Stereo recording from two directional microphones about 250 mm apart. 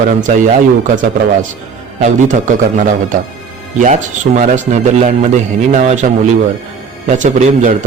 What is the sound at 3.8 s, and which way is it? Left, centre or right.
A man's voice, right.